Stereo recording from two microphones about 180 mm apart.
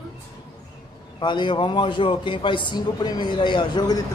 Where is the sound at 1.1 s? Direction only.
25° left (ahead or behind).